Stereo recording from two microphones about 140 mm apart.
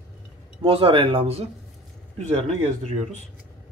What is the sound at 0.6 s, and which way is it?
Speech, 40° right (ahead or behind).